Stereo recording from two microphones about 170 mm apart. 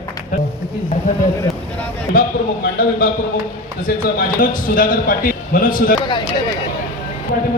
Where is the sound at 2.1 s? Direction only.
60° left (ahead or behind).